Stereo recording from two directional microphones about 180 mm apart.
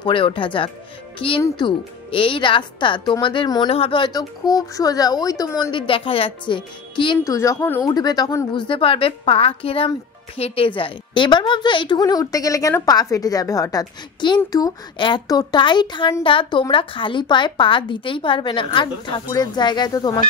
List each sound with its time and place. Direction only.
0.0 s a woman's voice: 30° left (ahead or behind)
7.2 s a woman's voice: 15° left (ahead or behind)